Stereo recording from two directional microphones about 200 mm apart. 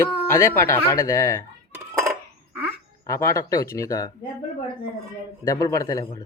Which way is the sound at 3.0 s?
15° left (ahead or behind).